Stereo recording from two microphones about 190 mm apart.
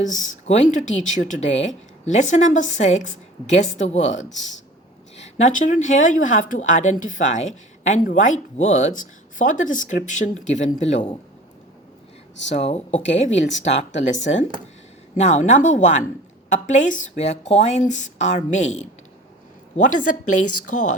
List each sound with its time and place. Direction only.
0.4 s a woman's voice: 35° left (ahead or behind)
12.5 s a woman's voice: 35° left (ahead or behind)
13.6 s speech: 70° left (ahead or behind)
15.1 s a woman's voice: 40° left (ahead or behind)